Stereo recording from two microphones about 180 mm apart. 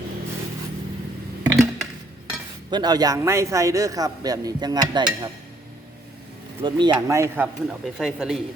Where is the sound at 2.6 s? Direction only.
25° right (ahead or behind).